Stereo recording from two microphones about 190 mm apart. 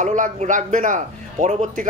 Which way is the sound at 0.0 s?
40° right (ahead or behind).